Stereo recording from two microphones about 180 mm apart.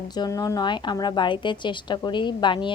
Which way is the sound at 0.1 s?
20° left (ahead or behind).